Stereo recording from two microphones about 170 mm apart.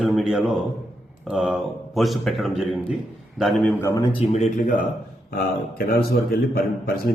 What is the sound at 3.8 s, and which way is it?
Speech, 20° left (ahead or behind).